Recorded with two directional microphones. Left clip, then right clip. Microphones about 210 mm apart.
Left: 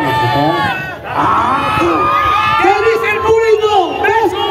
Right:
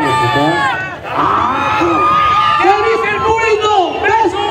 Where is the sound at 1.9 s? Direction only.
30° right (ahead or behind).